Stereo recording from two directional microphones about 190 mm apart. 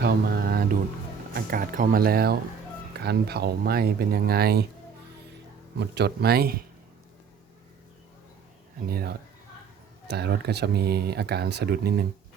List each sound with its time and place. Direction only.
0.0 s mantra: 50° right (ahead or behind)
1.3 s speech: 50° right (ahead or behind)
5.8 s speech: 60° right (ahead or behind)
8.9 s speech: 55° right (ahead or behind)